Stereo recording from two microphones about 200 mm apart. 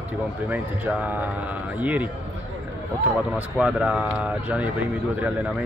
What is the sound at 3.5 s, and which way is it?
Speech, 5° right (ahead or behind).